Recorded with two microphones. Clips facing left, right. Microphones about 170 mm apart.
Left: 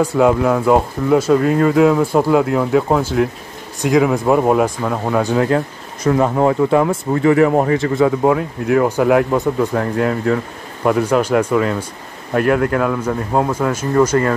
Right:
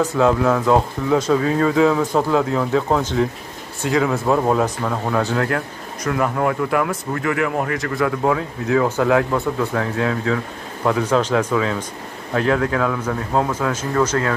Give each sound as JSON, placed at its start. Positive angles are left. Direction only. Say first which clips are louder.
{"t": 0.0, "sound": "speech", "louder": "left 3 dB", "side_deg": 10}
{"t": 6.0, "sound": "speech", "louder": "left 6 dB", "side_deg": 30}
{"t": 7.6, "sound": "speech", "louder": "left 6 dB", "side_deg": 25}
{"t": 8.3, "sound": "speech", "louder": "left 4 dB", "side_deg": 10}